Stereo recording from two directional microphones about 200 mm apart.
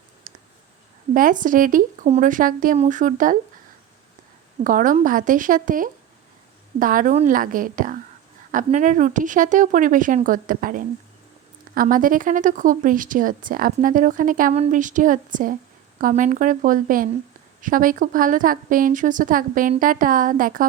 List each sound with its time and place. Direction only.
0.3 s a sound: 45° right (ahead or behind)
1.1 s speech: 40° right (ahead or behind)
4.6 s speech: 40° right (ahead or behind)